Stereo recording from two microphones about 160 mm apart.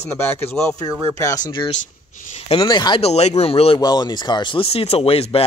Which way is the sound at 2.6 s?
25° left (ahead or behind).